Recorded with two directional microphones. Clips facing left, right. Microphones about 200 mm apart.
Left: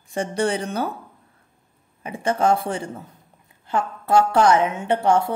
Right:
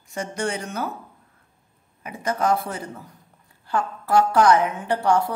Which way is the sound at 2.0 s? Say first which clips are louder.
Left 3 dB; 30° left (ahead or behind).